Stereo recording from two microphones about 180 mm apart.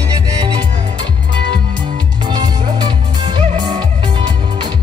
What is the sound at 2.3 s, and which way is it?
Music, 25° right (ahead or behind).